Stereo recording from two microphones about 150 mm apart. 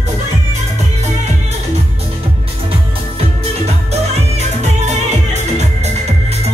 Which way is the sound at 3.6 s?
45° right (ahead or behind).